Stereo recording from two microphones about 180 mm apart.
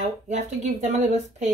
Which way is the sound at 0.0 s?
40° right (ahead or behind).